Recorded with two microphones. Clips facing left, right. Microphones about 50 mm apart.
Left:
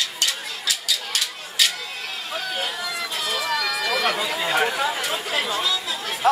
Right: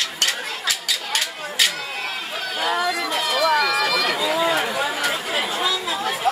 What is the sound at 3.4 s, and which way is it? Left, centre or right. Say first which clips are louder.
Run: right 7 dB; right.